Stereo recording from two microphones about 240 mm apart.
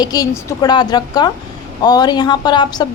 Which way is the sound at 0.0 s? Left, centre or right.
Centre.